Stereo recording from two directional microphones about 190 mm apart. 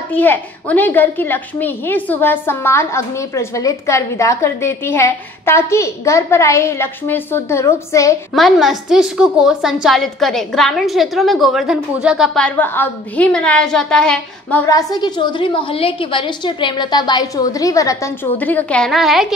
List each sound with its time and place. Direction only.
0.1 s a woman's voice: 10° left (ahead or behind)
8.4 s a woman's voice: centre (ahead or behind)
14.7 s a woman's voice: 20° left (ahead or behind); by 19.2 s centre (ahead or behind)